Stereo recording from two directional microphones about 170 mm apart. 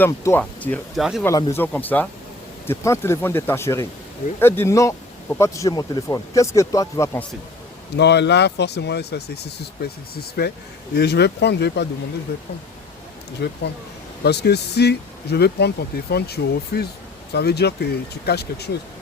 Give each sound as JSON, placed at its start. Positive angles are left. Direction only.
{"t": 0.0, "sound": "speech", "side_deg": 10}
{"t": 1.2, "sound": "speech", "side_deg": 20}
{"t": 7.9, "sound": "speech", "side_deg": 85}
{"t": 13.4, "sound": "speech", "side_deg": 75}